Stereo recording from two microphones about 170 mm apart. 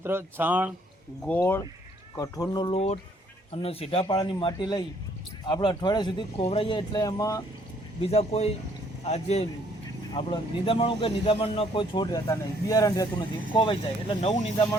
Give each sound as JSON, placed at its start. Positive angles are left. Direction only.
{"t": 0.0, "sound": "speech", "side_deg": -15}
{"t": 1.3, "sound": "a man's voice", "side_deg": 10}
{"t": 8.1, "sound": "a man's voice", "side_deg": 35}
{"t": 13.5, "sound": "a man's voice", "side_deg": 30}